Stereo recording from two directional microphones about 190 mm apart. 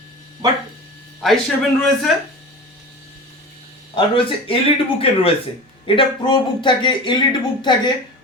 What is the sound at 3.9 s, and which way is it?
Speech, 30° left (ahead or behind).